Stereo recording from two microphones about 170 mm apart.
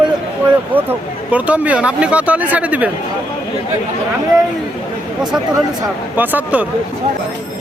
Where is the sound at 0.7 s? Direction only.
10° right (ahead or behind).